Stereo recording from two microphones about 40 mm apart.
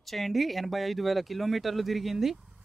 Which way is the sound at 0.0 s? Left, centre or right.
Centre.